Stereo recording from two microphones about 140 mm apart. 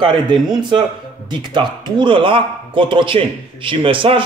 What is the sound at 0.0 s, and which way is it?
Speech, 35° right (ahead or behind).